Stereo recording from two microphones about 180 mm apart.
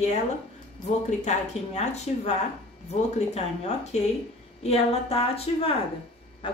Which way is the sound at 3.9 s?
40° left (ahead or behind).